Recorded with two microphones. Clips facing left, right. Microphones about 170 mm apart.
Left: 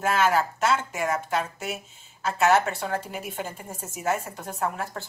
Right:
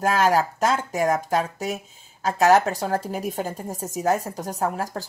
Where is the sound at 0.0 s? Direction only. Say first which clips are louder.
Right 3 dB; 40° right (ahead or behind).